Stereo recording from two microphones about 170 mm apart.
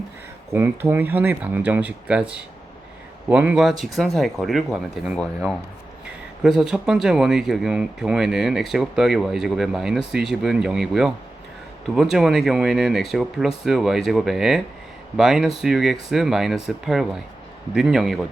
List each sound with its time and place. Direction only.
0.5 s speech: 15° right (ahead or behind)